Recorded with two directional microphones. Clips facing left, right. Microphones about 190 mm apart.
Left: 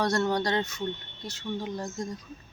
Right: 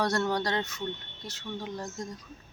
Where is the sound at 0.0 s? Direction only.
5° right (ahead or behind).